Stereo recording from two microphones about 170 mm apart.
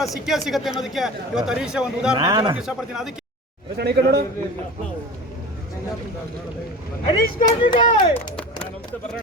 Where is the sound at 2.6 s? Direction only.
5° right (ahead or behind).